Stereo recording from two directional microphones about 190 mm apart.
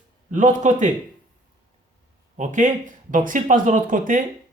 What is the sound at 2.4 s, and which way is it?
Speech, 40° right (ahead or behind).